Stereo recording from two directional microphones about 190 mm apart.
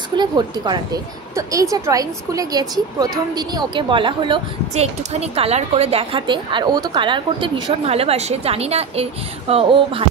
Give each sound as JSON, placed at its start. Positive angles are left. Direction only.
{"t": 0.1, "sound": "a woman's voice", "side_deg": -20}